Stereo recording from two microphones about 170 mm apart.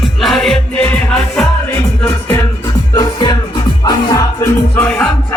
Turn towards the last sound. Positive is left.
turn(degrees=10)  # may be behind; listen again after turning